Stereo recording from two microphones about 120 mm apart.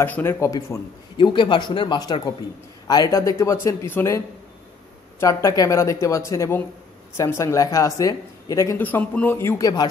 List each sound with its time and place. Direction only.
0.0 s speech: 20° left (ahead or behind)
1.1 s speech: 40° left (ahead or behind); by 4.2 s 20° left (ahead or behind)
5.2 s speech: 25° left (ahead or behind)
8.7 s speech: 15° left (ahead or behind)
9.6 s speech: 35° left (ahead or behind)